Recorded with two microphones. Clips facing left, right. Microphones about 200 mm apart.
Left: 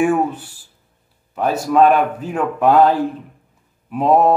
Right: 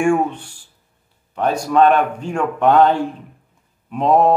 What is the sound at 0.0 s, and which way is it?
Speech, 5° left (ahead or behind).